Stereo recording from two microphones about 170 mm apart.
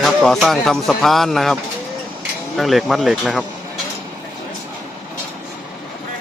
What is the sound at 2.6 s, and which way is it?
Speech, centre (ahead or behind).